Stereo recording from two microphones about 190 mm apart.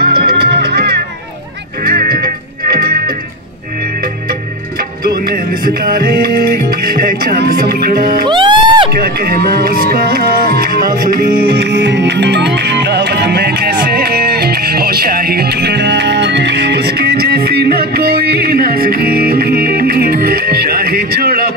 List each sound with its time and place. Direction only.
0.0 s music: 55° right (ahead or behind)
5.0 s music: 50° right (ahead or behind)
6.8 s speech: 50° right (ahead or behind)
8.3 s music: 25° right (ahead or behind)
8.9 s music: 55° right (ahead or behind)